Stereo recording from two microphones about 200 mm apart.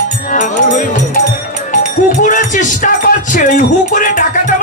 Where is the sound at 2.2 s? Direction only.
40° left (ahead or behind).